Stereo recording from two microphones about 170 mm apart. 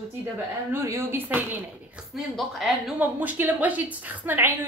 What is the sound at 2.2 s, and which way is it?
A woman's voice, centre (ahead or behind).